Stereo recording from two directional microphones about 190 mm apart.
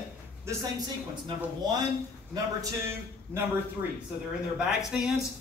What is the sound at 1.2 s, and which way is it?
Speech, 20° right (ahead or behind).